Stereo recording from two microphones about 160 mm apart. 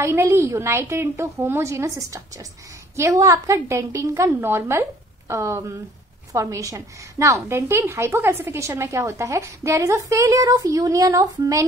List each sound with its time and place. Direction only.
0.0 s a woman's voice: 15° right (ahead or behind)